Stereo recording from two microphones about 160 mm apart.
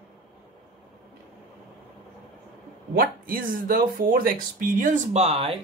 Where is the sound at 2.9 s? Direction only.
65° right (ahead or behind); by 5.6 s 40° right (ahead or behind).